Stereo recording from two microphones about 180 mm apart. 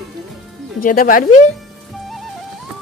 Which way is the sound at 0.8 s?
50° left (ahead or behind).